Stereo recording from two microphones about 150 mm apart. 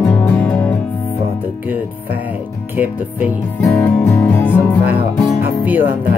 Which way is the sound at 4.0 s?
15° left (ahead or behind).